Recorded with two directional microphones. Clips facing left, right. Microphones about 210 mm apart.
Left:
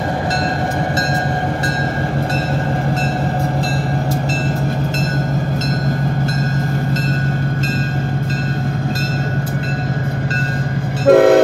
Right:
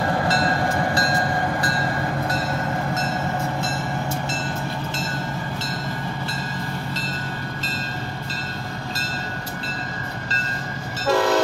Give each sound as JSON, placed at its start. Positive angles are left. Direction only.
{"t": 11.1, "sound": "train", "side_deg": 55}